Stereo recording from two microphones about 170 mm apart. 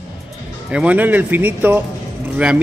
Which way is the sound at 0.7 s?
5° right (ahead or behind).